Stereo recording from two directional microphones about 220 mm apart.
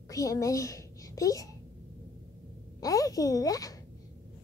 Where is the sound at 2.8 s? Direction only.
15° left (ahead or behind).